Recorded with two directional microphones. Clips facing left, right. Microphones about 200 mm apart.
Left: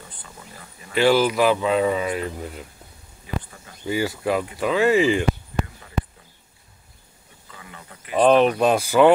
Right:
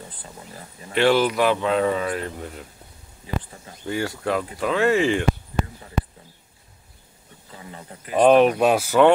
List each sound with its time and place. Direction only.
0.2 s speech: 30° right (ahead or behind)
0.9 s speech: centre (ahead or behind)
3.8 s speech: 5° left (ahead or behind)
7.5 s speech: 30° right (ahead or behind)
8.1 s speech: 10° right (ahead or behind)